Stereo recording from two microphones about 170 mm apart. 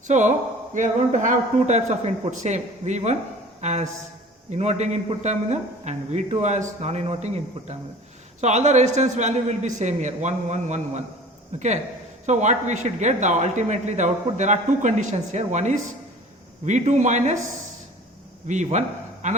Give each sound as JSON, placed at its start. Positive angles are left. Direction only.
{"t": 0.1, "sound": "speech", "side_deg": -45}
{"t": 18.4, "sound": "a man's voice", "side_deg": -45}